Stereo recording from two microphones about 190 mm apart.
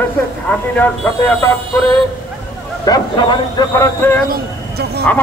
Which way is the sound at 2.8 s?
20° left (ahead or behind).